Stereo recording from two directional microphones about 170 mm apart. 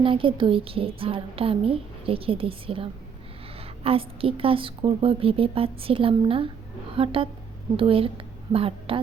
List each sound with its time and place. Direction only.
0.0 s a woman's voice: 30° right (ahead or behind)